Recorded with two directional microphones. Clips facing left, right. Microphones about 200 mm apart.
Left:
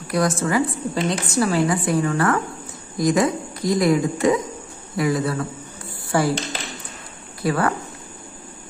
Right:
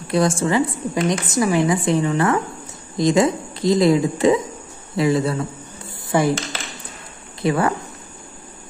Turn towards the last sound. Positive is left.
turn(degrees=-20)  # may be behind; listen again after turning